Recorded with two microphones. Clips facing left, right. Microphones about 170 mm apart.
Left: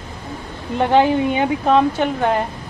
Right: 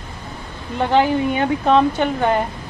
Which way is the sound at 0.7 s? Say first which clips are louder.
Left 2 dB; 20° left (ahead or behind).